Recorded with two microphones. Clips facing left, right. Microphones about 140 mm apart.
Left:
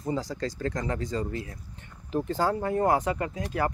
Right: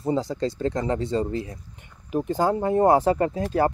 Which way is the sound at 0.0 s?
25° right (ahead or behind).